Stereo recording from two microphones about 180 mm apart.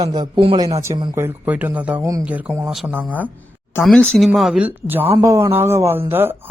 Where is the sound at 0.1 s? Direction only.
25° right (ahead or behind).